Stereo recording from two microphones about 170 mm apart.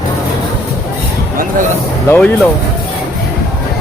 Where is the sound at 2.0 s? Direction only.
15° left (ahead or behind).